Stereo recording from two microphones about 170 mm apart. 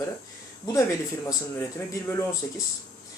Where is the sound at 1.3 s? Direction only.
20° left (ahead or behind).